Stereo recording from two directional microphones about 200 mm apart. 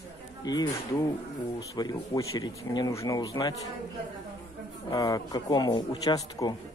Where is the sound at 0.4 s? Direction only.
20° left (ahead or behind).